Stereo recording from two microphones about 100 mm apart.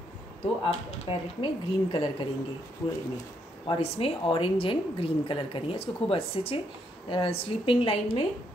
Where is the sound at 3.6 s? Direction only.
65° left (ahead or behind).